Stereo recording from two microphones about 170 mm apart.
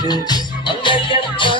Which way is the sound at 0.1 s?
25° left (ahead or behind).